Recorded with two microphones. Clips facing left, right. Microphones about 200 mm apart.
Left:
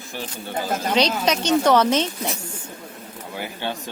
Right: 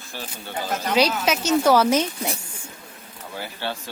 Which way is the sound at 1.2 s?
5° right (ahead or behind).